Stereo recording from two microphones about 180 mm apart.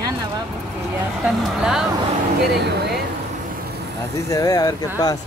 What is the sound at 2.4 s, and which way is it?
Speech, 65° right (ahead or behind).